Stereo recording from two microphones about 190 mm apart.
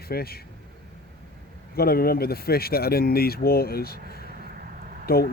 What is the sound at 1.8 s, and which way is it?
Speech, 55° left (ahead or behind).